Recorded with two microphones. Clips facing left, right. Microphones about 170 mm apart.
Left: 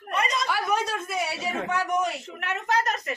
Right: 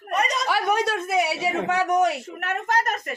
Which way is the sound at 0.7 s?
70° right (ahead or behind).